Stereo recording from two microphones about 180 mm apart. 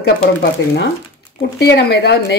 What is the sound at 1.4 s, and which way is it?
Speech, 70° left (ahead or behind).